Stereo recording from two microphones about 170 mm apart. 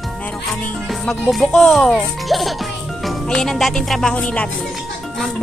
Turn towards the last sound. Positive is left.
turn(degrees=5)  # may be behind; listen again after turning